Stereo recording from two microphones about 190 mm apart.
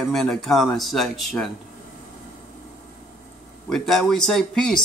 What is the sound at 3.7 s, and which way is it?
Speech, centre (ahead or behind).